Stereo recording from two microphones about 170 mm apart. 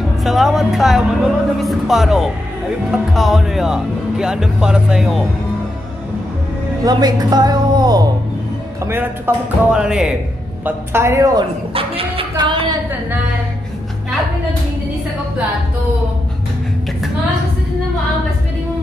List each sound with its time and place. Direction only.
0.2 s speech: centre (ahead or behind)
6.8 s speech: 25° right (ahead or behind)
8.8 s speech: 10° right (ahead or behind)
11.7 s a sound: 35° right (ahead or behind)